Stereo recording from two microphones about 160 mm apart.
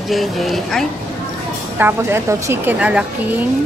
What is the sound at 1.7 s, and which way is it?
A woman's voice, 15° right (ahead or behind).